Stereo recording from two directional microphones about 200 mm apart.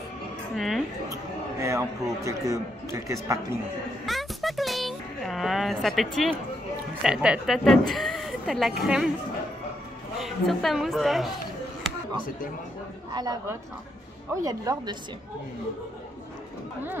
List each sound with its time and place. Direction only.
0.6 s a man's voice: centre (ahead or behind)
1.6 s speech: 15° right (ahead or behind)
4.0 s a sound: centre (ahead or behind)
7.0 s a man's voice: 5° right (ahead or behind)
10.1 s a man's voice: centre (ahead or behind)
13.1 s a woman's voice: 20° right (ahead or behind)